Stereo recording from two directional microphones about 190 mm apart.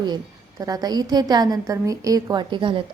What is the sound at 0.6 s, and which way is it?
A woman's voice, 20° right (ahead or behind).